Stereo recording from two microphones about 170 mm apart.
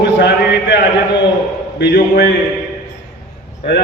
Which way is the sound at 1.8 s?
75° left (ahead or behind).